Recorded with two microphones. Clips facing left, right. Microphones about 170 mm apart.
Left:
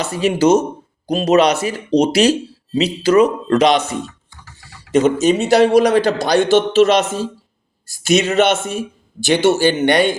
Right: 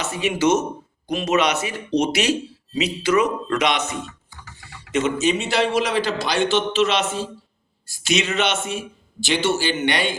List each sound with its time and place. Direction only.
0.0 s speech: 35° left (ahead or behind)